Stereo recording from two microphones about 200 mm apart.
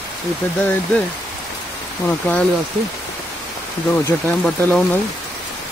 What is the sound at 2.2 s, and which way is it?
Speech, 5° left (ahead or behind).